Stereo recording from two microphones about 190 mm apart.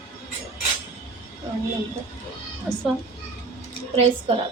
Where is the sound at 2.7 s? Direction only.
5° right (ahead or behind).